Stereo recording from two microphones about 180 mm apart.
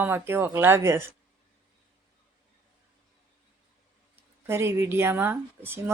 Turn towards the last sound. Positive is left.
turn(degrees=-10)  # may be behind; listen again after turning